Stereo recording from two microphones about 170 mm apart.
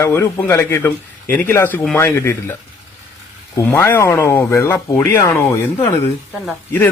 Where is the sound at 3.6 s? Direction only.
15° left (ahead or behind).